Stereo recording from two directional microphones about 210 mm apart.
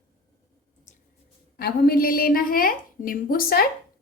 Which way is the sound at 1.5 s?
45° left (ahead or behind).